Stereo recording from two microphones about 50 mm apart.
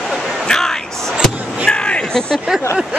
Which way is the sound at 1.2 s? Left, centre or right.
Centre.